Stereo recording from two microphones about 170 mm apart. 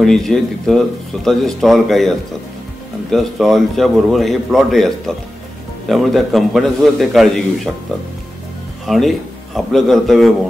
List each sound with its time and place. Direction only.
0.0 s speech: centre (ahead or behind)
8.8 s a man's voice: centre (ahead or behind)